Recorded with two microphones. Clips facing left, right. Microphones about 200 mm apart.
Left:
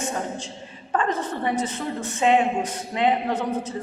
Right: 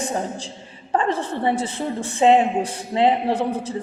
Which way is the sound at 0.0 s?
35° right (ahead or behind).